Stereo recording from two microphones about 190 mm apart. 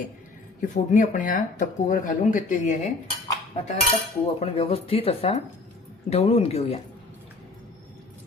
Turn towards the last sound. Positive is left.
turn(degrees=35)  # may be behind; listen again after turning